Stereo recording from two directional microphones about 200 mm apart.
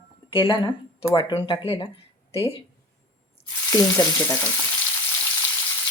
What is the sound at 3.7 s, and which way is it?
Frying, 15° left (ahead or behind).